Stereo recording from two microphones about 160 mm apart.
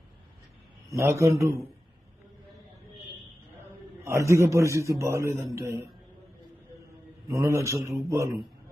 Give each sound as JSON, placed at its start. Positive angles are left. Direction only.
{"t": 0.9, "sound": "a man's voice", "side_deg": -20}
{"t": 4.0, "sound": "a man's voice", "side_deg": -20}
{"t": 7.3, "sound": "a man's voice", "side_deg": -20}